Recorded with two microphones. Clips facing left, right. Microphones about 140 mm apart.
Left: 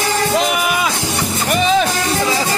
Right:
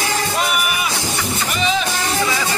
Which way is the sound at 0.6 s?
90° left.